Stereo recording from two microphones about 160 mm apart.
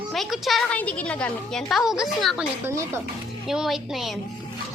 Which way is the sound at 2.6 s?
15° right (ahead or behind).